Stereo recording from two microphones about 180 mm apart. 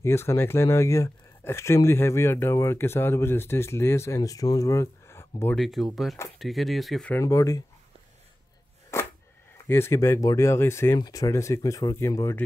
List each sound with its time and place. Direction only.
0.0 s speech: 15° left (ahead or behind)
5.6 s speech: centre (ahead or behind)
7.2 s speech: 15° left (ahead or behind)
8.9 s a sound: 15° left (ahead or behind)
9.7 s speech: 15° left (ahead or behind)